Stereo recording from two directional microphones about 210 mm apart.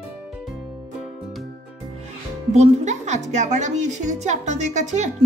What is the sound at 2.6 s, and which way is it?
Speech, 35° right (ahead or behind).